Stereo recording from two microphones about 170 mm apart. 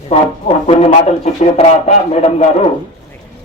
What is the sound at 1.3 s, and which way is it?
A man's voice, 40° left (ahead or behind).